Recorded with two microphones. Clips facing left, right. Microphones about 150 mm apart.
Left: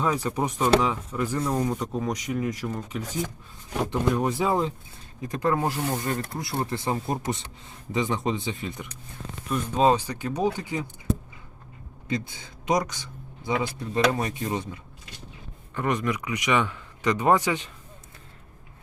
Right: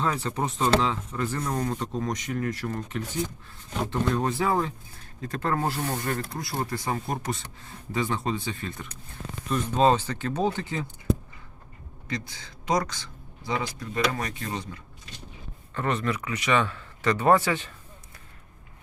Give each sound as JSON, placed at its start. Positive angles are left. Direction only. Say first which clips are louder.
{"t": 0.0, "sound": "a man's voice", "louder": "left 2 dB", "side_deg": 10}
{"t": 12.0, "sound": "speech", "louder": "left 4 dB", "side_deg": 25}
{"t": 15.7, "sound": "a man's voice", "louder": "left 1 dB", "side_deg": 15}